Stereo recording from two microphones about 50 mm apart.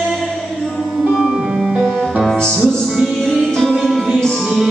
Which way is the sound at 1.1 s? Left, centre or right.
Centre.